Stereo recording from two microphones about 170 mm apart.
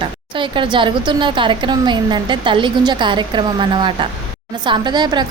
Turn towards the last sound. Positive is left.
turn(degrees=-25)  # may be behind; listen again after turning